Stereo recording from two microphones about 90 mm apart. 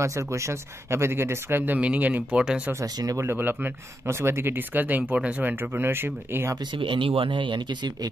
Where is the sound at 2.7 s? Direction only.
45° right (ahead or behind).